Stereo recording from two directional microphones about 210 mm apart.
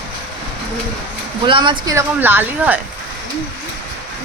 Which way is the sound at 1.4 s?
25° right (ahead or behind).